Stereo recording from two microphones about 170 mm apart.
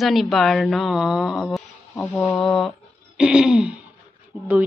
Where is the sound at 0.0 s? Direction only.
Centre (ahead or behind).